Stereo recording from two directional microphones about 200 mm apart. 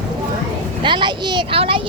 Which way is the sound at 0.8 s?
25° right (ahead or behind).